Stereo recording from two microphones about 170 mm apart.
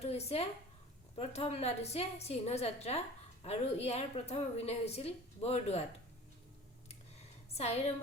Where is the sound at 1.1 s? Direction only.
35° left (ahead or behind).